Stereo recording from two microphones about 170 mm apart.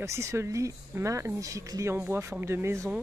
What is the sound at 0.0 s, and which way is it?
Speech, 15° right (ahead or behind).